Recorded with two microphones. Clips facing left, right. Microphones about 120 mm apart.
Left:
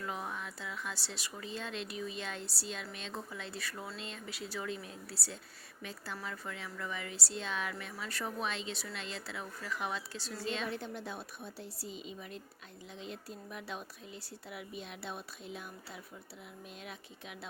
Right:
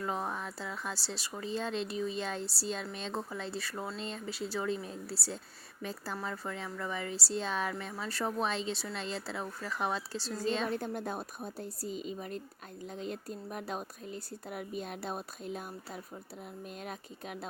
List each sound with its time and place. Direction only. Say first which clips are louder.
0.0 s speech: right 5 dB; 35° right (ahead or behind)